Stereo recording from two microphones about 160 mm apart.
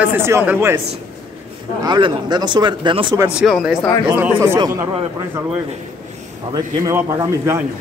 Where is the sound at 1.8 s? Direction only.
30° right (ahead or behind).